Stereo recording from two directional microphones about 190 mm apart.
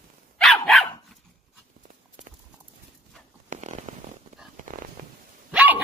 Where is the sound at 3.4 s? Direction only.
40° right (ahead or behind).